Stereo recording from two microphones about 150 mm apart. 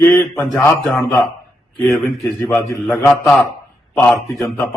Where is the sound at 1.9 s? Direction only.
15° left (ahead or behind).